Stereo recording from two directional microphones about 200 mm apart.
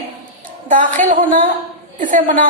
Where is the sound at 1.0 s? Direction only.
40° right (ahead or behind).